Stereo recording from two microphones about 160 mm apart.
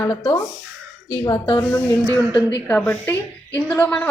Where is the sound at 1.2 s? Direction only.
20° left (ahead or behind).